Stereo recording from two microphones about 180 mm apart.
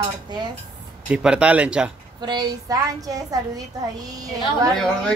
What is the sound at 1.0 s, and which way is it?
Speech, 5° right (ahead or behind).